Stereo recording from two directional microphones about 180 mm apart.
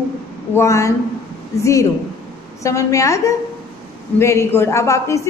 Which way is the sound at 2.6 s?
15° left (ahead or behind).